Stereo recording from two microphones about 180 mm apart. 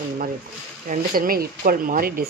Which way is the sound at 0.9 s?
50° right (ahead or behind).